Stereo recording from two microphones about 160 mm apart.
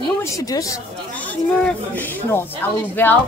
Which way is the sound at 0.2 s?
20° left (ahead or behind).